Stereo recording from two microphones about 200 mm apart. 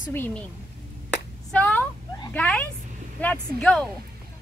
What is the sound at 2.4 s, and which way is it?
A woman's voice, 5° left (ahead or behind).